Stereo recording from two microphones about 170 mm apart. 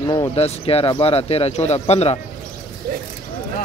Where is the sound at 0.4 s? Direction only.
35° left (ahead or behind).